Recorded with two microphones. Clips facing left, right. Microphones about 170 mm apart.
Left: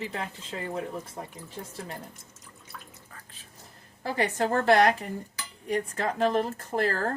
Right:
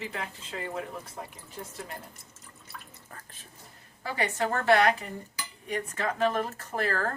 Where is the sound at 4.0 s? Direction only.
35° left (ahead or behind).